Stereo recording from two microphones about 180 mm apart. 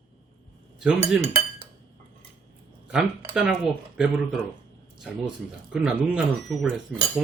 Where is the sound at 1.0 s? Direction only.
35° right (ahead or behind).